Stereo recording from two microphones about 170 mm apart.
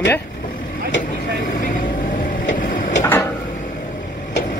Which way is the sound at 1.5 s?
50° left (ahead or behind).